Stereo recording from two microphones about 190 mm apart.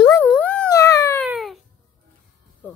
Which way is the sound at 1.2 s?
Centre (ahead or behind).